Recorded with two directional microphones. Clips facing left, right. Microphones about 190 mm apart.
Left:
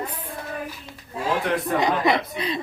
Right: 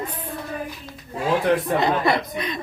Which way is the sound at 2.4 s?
30° left (ahead or behind).